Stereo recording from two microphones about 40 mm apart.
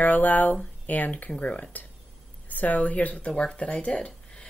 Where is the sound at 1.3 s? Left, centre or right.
Left.